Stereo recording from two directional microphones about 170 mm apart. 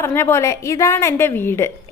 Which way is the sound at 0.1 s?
15° left (ahead or behind).